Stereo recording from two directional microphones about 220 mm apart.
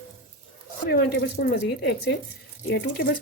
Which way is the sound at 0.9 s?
45° left (ahead or behind).